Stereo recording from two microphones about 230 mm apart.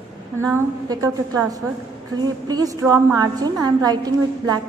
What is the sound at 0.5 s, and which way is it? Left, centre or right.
Speech, centre.